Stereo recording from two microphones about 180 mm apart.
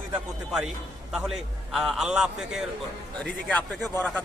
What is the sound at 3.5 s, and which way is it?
Speech, 10° left (ahead or behind).